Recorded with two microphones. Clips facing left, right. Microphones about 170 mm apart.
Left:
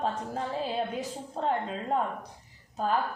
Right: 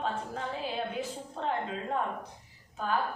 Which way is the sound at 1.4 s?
35° left (ahead or behind).